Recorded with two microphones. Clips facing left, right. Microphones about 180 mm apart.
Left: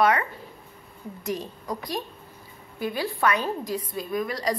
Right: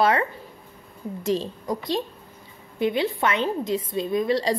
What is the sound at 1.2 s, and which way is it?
Speech, 25° right (ahead or behind).